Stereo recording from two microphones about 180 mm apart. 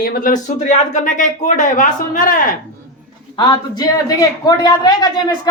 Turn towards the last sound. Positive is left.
turn(degrees=20)  # may be behind; listen again after turning